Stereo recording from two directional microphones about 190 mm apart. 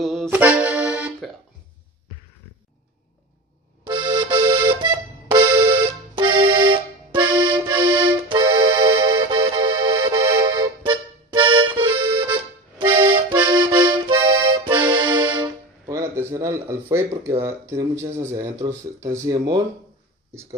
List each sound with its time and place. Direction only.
0.0 s accordion: centre (ahead or behind)
3.8 s accordion: 25° right (ahead or behind)
6.1 s accordion: 25° right (ahead or behind)
18.2 s speech: 15° right (ahead or behind)